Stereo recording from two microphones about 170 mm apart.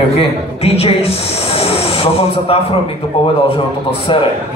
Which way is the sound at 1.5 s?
35° left (ahead or behind).